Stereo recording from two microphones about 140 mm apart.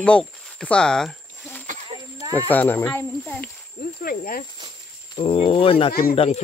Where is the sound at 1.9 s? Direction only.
35° right (ahead or behind).